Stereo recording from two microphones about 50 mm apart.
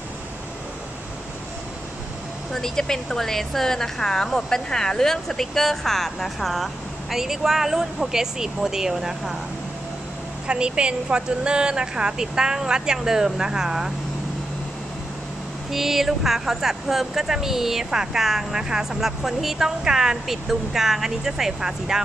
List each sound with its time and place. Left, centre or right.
2.5 s a woman's voice: centre
10.4 s speech: centre
15.7 s speech: centre